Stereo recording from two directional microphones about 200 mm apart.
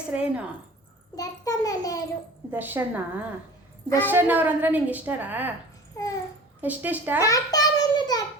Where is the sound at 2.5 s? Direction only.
10° right (ahead or behind).